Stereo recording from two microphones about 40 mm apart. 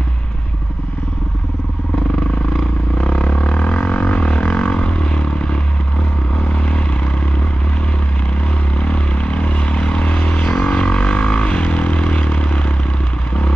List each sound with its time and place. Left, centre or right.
3.0 s vehicle: left
3.5 s didgeridoo: left
6.3 s vehicle: left
8.7 s vehicle: left
10.4 s vehicle: centre
10.7 s vehicle: left